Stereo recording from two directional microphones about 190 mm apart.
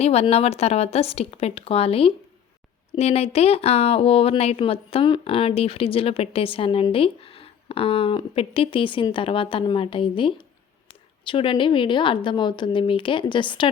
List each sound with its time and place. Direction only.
0.0 s speech: 35° left (ahead or behind)